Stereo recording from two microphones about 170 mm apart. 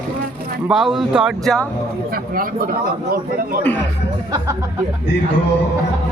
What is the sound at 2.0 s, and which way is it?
Speech, 60° right (ahead or behind).